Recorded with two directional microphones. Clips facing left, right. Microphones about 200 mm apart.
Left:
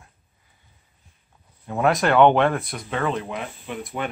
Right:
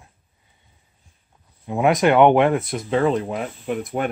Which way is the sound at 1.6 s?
15° right (ahead or behind).